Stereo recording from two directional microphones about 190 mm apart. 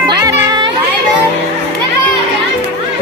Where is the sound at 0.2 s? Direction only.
20° right (ahead or behind).